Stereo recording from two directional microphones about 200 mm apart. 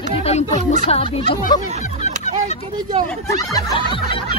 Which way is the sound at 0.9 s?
30° left (ahead or behind).